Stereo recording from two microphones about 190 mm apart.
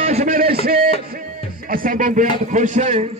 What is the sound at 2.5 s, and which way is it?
Speech, 40° right (ahead or behind).